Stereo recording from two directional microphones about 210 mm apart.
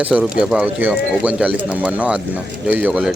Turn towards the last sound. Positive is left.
turn(degrees=-5)  # may be behind; listen again after turning